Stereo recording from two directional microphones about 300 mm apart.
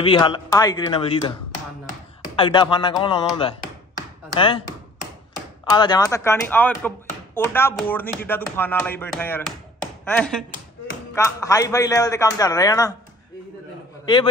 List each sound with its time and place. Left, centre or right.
0.0 s music: centre
2.3 s music: centre
4.4 s music: centre
5.7 s music: centre
10.0 s speech: centre
11.1 s music: centre